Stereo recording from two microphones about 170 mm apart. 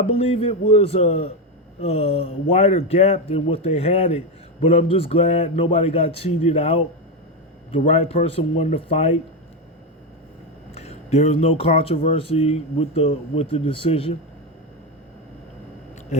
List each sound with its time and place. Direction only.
0.0 s speech: 35° left (ahead or behind)
10.8 s speech: 40° left (ahead or behind)